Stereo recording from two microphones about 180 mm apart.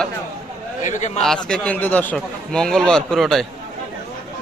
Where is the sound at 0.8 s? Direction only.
40° left (ahead or behind).